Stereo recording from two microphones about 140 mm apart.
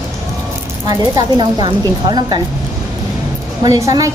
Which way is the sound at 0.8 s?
30° right (ahead or behind).